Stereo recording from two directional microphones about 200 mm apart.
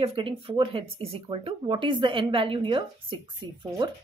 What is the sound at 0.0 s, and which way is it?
Speech, 25° right (ahead or behind).